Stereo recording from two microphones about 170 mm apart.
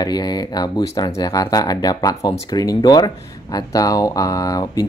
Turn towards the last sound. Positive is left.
turn(degrees=20)  # may be behind; listen again after turning